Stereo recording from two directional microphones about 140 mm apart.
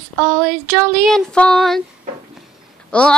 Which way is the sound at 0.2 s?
5° left (ahead or behind).